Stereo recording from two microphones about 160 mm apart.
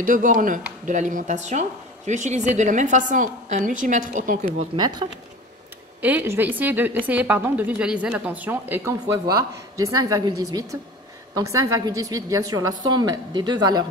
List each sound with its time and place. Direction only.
0.0 s a woman's voice: 55° right (ahead or behind)
4.7 s speech: 35° right (ahead or behind)
5.9 s a woman's voice: 10° right (ahead or behind); by 13.8 s 25° right (ahead or behind)